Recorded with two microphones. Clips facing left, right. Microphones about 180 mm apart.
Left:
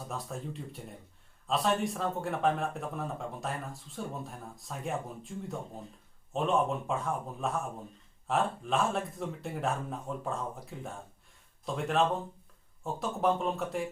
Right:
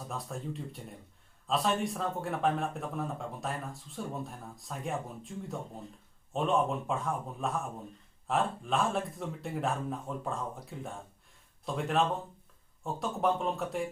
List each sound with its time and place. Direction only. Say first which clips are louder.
0.1 s a man's voice: right 1 dB; centre (ahead or behind)